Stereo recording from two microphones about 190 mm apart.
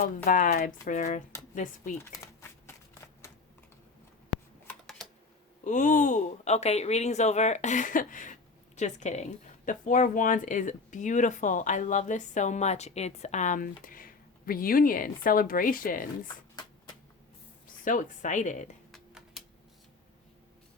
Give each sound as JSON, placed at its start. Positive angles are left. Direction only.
{"t": 0.3, "sound": "speech", "side_deg": 45}
{"t": 2.2, "sound": "a sound", "side_deg": 15}
{"t": 5.6, "sound": "speech", "side_deg": 40}
{"t": 17.8, "sound": "speech", "side_deg": 45}
{"t": 18.9, "sound": "computer keyboard", "side_deg": 0}